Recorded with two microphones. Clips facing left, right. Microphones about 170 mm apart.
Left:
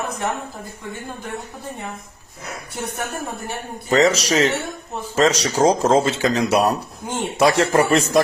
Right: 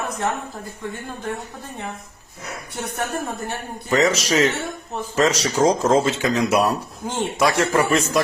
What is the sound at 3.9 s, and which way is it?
A man's voice, 35° left (ahead or behind).